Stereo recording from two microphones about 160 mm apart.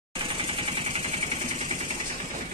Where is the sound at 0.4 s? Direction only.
35° right (ahead or behind).